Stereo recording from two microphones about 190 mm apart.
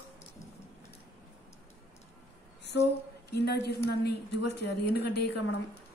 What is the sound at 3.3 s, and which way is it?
A woman's voice, 60° left (ahead or behind).